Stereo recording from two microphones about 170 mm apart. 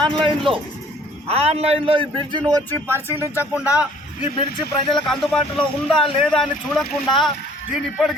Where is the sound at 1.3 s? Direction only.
35° right (ahead or behind).